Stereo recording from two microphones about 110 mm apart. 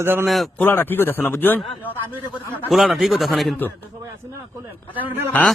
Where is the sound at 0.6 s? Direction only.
20° left (ahead or behind).